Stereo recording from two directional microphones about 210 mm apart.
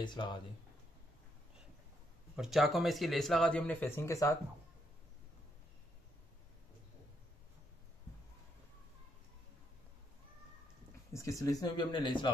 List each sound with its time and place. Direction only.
0.0 s speech: 20° left (ahead or behind)
2.3 s speech: centre (ahead or behind); by 4.4 s 15° left (ahead or behind)
11.1 s speech: 15° left (ahead or behind)